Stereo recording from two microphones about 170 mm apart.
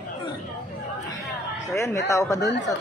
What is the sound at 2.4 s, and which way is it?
Speech, 90° left.